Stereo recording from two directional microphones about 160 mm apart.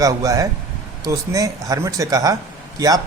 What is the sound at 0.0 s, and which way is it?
Speech, 20° right (ahead or behind).